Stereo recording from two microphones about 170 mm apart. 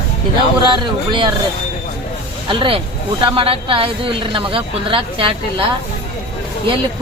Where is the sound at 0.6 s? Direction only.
30° right (ahead or behind).